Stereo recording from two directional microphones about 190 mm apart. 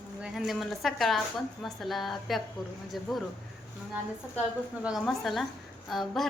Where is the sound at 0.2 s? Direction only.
Centre (ahead or behind).